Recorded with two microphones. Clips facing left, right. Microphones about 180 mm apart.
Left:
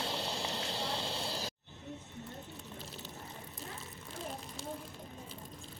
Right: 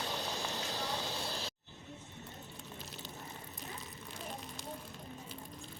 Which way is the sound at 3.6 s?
30° left (ahead or behind).